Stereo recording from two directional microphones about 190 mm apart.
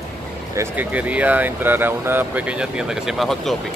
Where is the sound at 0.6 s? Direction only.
10° right (ahead or behind).